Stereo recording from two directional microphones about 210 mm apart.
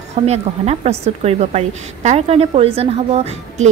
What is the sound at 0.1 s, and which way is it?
A woman's voice, 30° right (ahead or behind).